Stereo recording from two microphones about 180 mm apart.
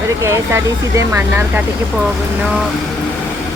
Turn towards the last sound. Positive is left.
turn(degrees=-15)  # may be behind; listen again after turning